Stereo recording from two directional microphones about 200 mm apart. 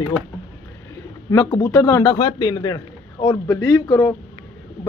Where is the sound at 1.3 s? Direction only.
20° left (ahead or behind).